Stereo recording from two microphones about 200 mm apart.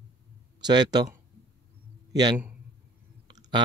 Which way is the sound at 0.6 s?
20° right (ahead or behind).